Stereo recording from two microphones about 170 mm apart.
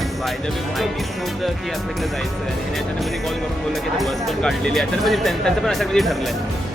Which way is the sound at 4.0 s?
Centre (ahead or behind).